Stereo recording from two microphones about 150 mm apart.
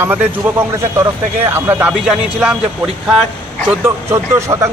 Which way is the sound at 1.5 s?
15° right (ahead or behind).